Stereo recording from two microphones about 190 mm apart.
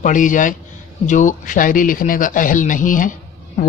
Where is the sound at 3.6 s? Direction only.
40° left (ahead or behind).